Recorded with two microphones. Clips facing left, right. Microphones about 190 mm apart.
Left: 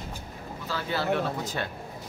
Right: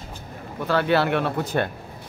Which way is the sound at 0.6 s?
65° right (ahead or behind).